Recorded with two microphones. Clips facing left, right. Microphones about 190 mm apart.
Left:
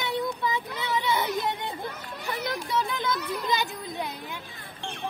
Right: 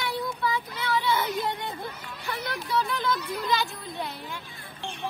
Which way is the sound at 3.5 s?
20° left (ahead or behind).